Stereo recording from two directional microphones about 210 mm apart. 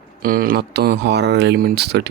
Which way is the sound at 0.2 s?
45° right (ahead or behind).